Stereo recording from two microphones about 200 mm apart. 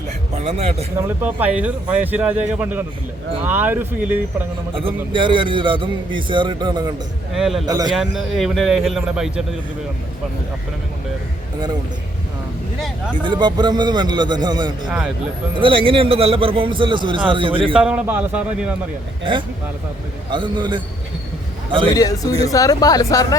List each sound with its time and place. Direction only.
0.3 s a man's voice: 35° right (ahead or behind)
0.9 s speech: 10° right (ahead or behind)
4.7 s a man's voice: 25° right (ahead or behind)
7.3 s speech: centre (ahead or behind)
7.7 s a man's voice: 20° right (ahead or behind)
7.9 s speech: centre (ahead or behind)
13.2 s a man's voice: 25° right (ahead or behind)
14.8 s speech: 5° right (ahead or behind)
15.5 s a man's voice: 25° right (ahead or behind)
17.7 s speech: 5° right (ahead or behind)
19.2 s a man's voice: 25° right (ahead or behind)
21.9 s speech: 15° left (ahead or behind)